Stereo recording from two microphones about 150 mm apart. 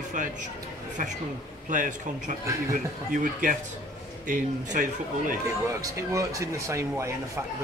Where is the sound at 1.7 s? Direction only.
55° right (ahead or behind).